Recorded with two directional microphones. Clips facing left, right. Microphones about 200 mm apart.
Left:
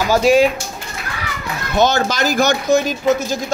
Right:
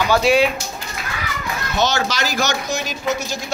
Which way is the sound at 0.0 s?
45° left (ahead or behind).